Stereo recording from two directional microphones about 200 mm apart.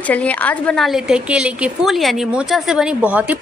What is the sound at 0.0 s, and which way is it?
Speech, 5° left (ahead or behind).